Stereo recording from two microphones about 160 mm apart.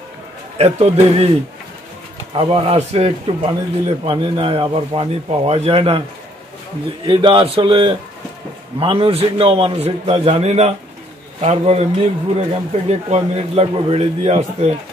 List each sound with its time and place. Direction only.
0.6 s a man's voice: 40° right (ahead or behind)
2.3 s a man's voice: 35° right (ahead or behind)
7.1 s a man's voice: 30° right (ahead or behind)